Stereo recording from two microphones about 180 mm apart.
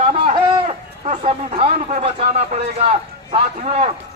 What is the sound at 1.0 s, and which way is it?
Speech, 40° right (ahead or behind).